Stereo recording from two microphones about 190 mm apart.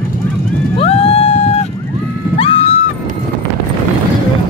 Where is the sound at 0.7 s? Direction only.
30° left (ahead or behind).